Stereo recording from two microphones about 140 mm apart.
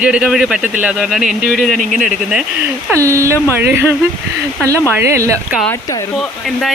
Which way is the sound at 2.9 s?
20° right (ahead or behind).